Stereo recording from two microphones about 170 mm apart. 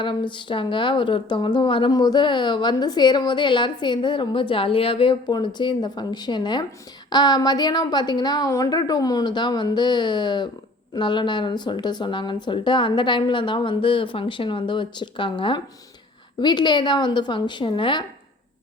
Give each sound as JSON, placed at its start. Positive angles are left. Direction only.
{"t": 0.0, "sound": "speech", "side_deg": 30}